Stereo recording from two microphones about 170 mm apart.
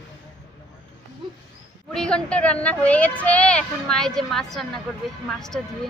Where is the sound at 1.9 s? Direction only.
5° left (ahead or behind).